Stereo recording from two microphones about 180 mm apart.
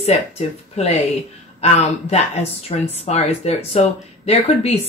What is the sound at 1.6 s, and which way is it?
Speech, 35° left (ahead or behind).